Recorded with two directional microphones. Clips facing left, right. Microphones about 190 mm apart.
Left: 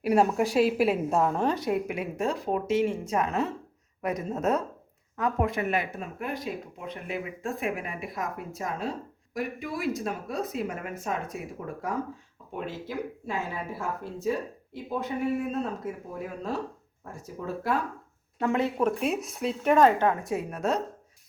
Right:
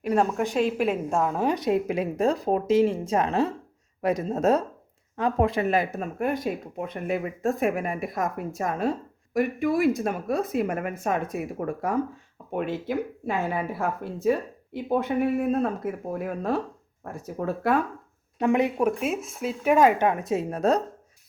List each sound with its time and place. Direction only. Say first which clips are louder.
0.0 s a woman's voice: left 1 dB; 10° left (ahead or behind)
1.5 s speech: right 3 dB; 20° right (ahead or behind)
1.9 s speech: right 6 dB; 35° right (ahead or behind); by 17.7 s 60° right (ahead or behind)
18.3 s speech: right 4 dB; 15° right (ahead or behind); by 20.8 s 35° right (ahead or behind)